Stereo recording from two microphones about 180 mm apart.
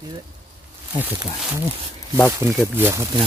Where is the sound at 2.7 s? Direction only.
15° right (ahead or behind).